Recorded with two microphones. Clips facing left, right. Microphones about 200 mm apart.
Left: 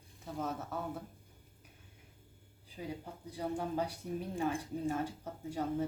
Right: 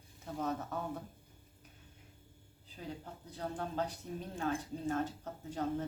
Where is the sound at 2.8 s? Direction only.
10° left (ahead or behind).